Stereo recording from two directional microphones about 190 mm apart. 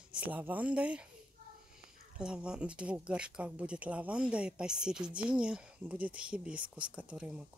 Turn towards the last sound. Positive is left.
turn(degrees=-5)  # may be behind; listen again after turning